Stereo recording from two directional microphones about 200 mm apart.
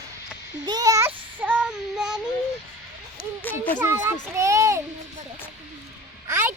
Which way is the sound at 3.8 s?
10° right (ahead or behind).